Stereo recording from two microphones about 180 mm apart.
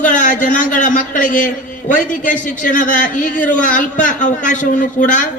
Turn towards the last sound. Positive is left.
turn(degrees=45)  # may be behind; listen again after turning